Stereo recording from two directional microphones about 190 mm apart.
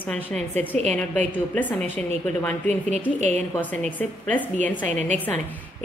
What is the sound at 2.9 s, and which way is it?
Speech, 35° right (ahead or behind).